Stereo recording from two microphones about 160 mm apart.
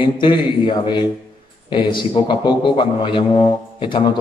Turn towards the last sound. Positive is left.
turn(degrees=30)  # may be behind; listen again after turning